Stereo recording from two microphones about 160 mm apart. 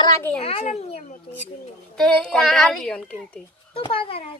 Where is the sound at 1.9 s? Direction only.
5° left (ahead or behind).